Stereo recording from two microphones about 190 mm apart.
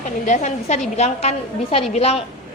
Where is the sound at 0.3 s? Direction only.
40° left (ahead or behind).